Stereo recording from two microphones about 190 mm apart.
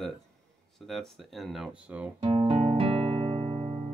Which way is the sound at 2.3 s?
30° right (ahead or behind).